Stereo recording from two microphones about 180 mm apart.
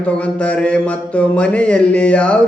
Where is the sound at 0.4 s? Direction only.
5° left (ahead or behind).